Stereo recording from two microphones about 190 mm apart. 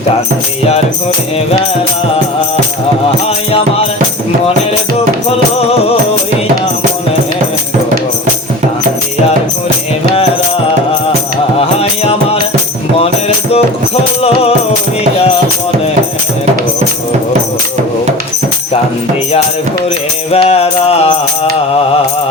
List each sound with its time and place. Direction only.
11.8 s music: 30° left (ahead or behind)
20.3 s music: 30° left (ahead or behind)